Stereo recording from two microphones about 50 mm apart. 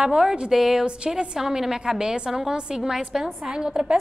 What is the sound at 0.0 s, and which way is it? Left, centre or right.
Speech, centre.